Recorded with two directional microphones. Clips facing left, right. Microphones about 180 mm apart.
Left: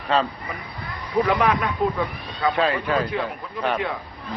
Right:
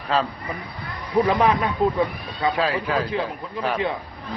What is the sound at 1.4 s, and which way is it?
Speech, 30° right (ahead or behind).